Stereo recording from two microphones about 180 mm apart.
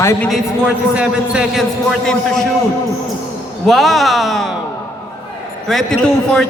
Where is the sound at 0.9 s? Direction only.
5° right (ahead or behind).